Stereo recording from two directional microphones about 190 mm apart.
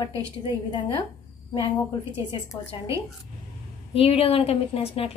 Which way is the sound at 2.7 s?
25° left (ahead or behind).